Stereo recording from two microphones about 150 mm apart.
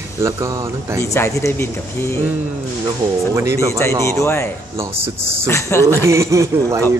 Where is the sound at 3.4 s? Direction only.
15° right (ahead or behind).